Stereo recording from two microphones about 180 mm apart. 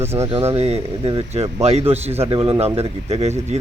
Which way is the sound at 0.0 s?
15° right (ahead or behind).